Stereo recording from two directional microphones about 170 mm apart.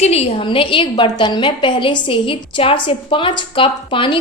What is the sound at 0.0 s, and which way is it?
A woman's voice, 40° left (ahead or behind).